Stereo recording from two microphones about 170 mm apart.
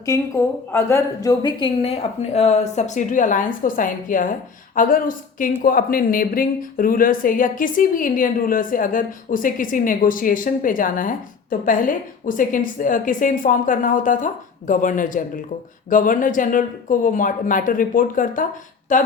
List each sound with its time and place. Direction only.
0.7 s a woman's voice: 15° left (ahead or behind); by 18.4 s 55° left (ahead or behind)